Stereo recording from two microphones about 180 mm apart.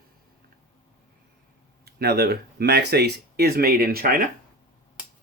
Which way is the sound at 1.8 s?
60° right (ahead or behind).